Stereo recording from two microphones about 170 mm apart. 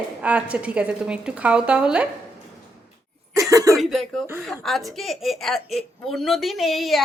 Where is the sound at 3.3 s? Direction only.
20° right (ahead or behind).